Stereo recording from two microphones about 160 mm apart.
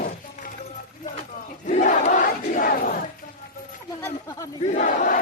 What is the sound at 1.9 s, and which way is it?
Speech, 50° left (ahead or behind).